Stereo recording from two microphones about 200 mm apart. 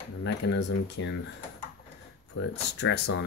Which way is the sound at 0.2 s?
65° left (ahead or behind).